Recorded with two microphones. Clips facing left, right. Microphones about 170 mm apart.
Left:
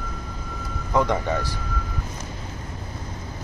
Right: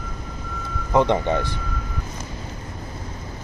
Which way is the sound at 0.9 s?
25° right (ahead or behind).